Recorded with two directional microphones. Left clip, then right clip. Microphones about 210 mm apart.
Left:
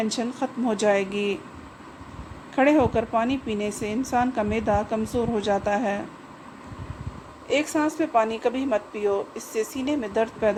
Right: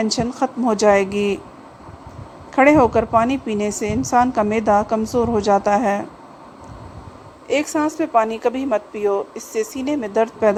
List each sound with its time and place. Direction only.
0.0 s a woman's voice: 25° right (ahead or behind)
2.6 s a woman's voice: 25° right (ahead or behind)
7.5 s a woman's voice: 30° right (ahead or behind)